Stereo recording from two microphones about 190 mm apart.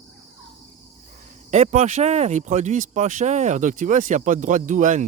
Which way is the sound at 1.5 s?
40° right (ahead or behind).